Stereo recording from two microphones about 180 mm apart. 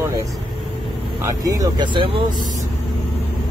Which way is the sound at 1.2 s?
20° right (ahead or behind).